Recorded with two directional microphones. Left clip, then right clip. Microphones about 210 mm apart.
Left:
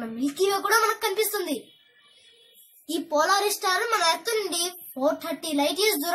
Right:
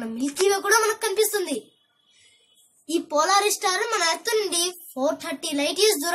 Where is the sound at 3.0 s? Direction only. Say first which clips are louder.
Right 2 dB; 15° right (ahead or behind).